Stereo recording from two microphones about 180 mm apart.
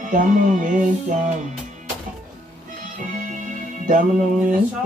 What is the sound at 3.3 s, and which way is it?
Music, 45° right (ahead or behind).